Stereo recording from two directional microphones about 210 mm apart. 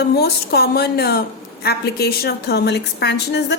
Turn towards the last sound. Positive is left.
turn(degrees=55)  # may be behind; listen again after turning